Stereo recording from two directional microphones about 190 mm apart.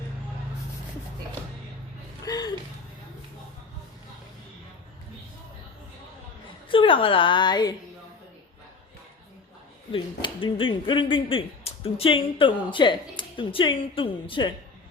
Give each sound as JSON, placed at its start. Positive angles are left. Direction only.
{"t": 2.2, "sound": "a sound", "side_deg": 20}
{"t": 6.7, "sound": "speech", "side_deg": 25}
{"t": 9.9, "sound": "speech", "side_deg": 25}